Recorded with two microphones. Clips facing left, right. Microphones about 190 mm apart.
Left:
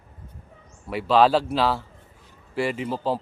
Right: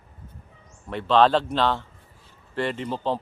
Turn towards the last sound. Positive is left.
turn(degrees=5)  # may be behind; listen again after turning